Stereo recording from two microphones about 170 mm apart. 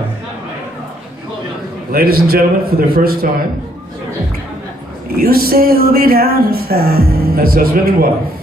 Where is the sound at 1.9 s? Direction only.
60° right (ahead or behind).